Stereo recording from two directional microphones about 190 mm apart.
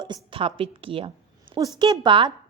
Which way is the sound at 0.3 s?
30° right (ahead or behind).